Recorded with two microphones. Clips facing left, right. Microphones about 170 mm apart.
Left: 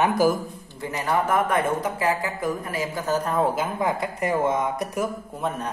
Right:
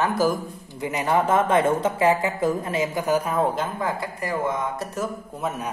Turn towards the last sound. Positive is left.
turn(degrees=-5)  # may be behind; listen again after turning